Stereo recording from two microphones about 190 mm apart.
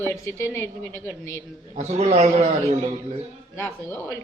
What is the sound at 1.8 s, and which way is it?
A man's voice, 35° right (ahead or behind).